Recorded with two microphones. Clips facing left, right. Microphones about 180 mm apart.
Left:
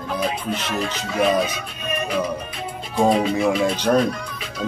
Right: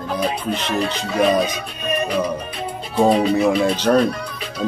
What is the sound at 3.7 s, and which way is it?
Speech, 10° left (ahead or behind).